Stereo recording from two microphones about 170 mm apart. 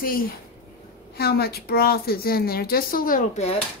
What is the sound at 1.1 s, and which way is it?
A woman's voice, 70° left (ahead or behind).